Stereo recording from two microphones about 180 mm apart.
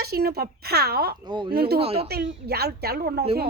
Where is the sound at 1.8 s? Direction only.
35° right (ahead or behind).